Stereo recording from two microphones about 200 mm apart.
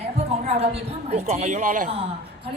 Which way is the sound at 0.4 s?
30° right (ahead or behind).